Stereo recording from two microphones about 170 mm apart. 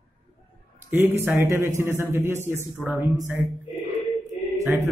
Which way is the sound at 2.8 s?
Centre (ahead or behind).